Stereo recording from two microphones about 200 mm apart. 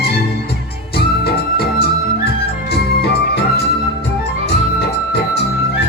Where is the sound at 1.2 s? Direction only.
50° left (ahead or behind).